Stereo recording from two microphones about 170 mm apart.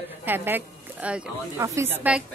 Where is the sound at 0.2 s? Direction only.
10° right (ahead or behind).